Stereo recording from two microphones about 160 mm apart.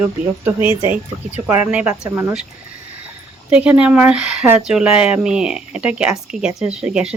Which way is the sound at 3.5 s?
5° right (ahead or behind).